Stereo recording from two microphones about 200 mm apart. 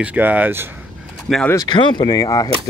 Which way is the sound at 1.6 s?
25° left (ahead or behind).